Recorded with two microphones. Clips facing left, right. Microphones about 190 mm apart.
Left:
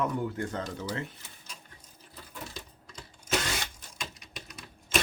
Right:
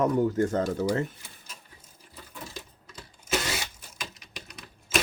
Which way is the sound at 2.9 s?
5° right (ahead or behind).